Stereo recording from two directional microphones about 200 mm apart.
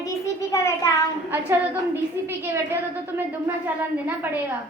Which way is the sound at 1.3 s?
10° right (ahead or behind).